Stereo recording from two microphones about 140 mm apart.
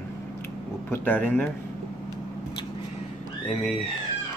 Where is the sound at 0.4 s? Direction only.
15° left (ahead or behind).